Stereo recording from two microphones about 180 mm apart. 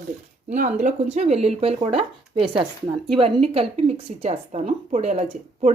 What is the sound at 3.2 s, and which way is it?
A woman's voice, 35° right (ahead or behind).